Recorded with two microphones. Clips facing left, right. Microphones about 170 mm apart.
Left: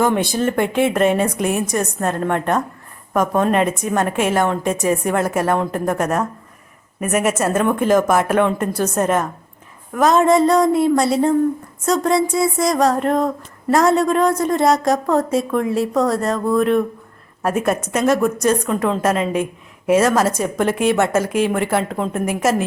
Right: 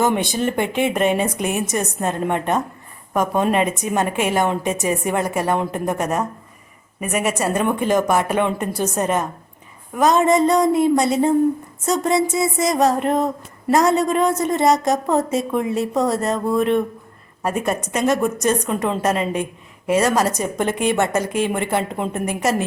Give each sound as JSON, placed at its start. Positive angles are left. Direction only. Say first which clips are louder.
{"t": 0.0, "sound": "speech", "louder": "left 2 dB", "side_deg": 0}